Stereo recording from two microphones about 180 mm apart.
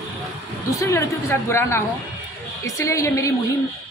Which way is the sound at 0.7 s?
15° left (ahead or behind).